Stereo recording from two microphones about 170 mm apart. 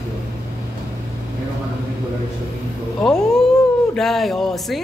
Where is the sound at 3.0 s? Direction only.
5° left (ahead or behind).